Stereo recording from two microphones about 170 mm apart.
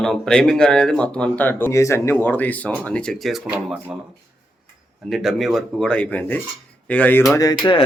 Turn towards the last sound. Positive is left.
turn(degrees=25)  # may be behind; listen again after turning